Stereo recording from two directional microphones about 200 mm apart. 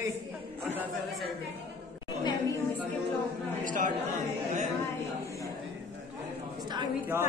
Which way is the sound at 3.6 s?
40° right (ahead or behind).